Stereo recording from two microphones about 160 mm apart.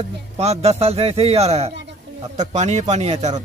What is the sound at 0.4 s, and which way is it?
Speech, 40° right (ahead or behind).